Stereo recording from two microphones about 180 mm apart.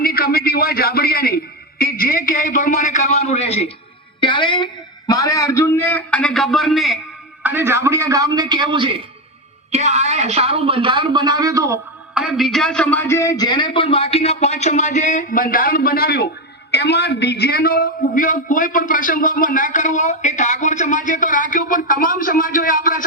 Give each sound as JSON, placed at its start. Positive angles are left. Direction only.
{"t": 0.0, "sound": "a sound", "side_deg": 55}
{"t": 1.8, "sound": "a man's voice", "side_deg": 50}
{"t": 7.4, "sound": "speech", "side_deg": -10}
{"t": 9.7, "sound": "speech", "side_deg": -40}
{"t": 12.1, "sound": "a man's voice", "side_deg": 0}